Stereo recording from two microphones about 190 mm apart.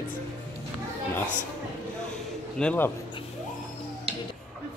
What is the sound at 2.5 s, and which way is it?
Speech, 10° left (ahead or behind).